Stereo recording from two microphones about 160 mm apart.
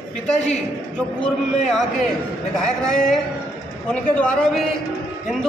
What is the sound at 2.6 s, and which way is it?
A man's voice, 5° left (ahead or behind).